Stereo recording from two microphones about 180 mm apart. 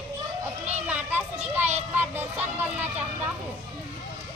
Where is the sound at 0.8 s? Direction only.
10° right (ahead or behind).